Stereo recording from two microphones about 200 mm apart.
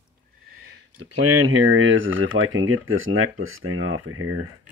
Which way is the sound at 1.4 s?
90° right.